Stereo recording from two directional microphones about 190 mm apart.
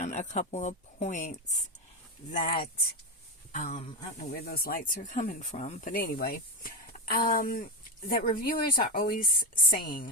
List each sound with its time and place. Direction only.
0.0 s speech: 40° left (ahead or behind)
3.5 s speech: 35° left (ahead or behind)
4.2 s speech: 55° left (ahead or behind)